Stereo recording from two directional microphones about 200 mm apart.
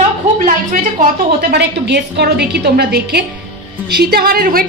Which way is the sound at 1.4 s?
55° right (ahead or behind).